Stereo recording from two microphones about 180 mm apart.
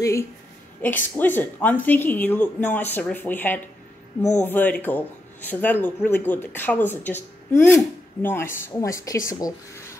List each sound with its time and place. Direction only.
0.8 s speech: 10° left (ahead or behind)